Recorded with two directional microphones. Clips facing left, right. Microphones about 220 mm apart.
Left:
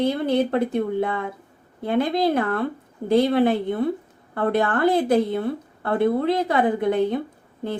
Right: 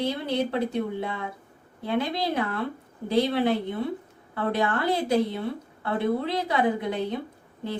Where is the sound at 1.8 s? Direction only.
50° left (ahead or behind).